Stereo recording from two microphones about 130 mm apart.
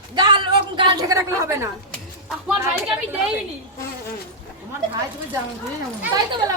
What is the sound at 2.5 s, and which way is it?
Speech, 10° right (ahead or behind).